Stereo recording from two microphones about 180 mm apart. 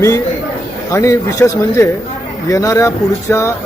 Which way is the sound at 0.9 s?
15° left (ahead or behind).